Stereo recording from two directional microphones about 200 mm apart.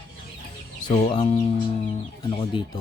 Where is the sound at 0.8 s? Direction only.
25° left (ahead or behind).